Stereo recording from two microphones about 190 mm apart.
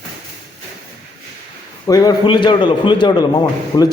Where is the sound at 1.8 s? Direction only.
20° left (ahead or behind).